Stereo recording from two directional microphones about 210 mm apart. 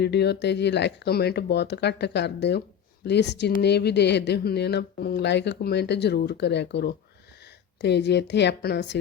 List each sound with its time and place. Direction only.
0.0 s speech: 50° left (ahead or behind)